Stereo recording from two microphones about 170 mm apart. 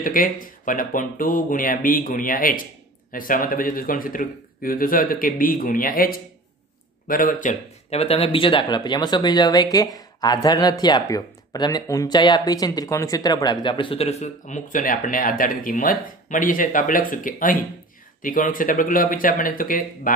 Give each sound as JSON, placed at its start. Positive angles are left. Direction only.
{"t": 0.0, "sound": "speech", "side_deg": 55}